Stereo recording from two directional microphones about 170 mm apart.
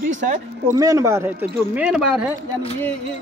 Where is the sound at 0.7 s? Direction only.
20° right (ahead or behind).